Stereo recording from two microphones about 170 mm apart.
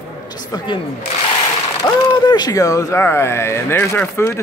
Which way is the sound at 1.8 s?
25° left (ahead or behind).